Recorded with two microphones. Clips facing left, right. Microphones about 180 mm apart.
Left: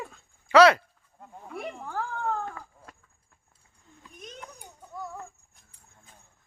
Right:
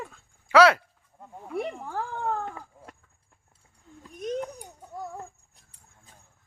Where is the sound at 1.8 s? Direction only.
15° right (ahead or behind).